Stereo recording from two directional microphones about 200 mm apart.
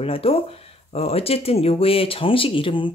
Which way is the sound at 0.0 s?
30° left (ahead or behind).